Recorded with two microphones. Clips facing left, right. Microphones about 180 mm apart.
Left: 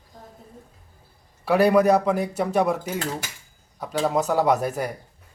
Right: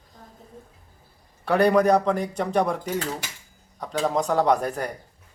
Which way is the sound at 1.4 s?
5° left (ahead or behind).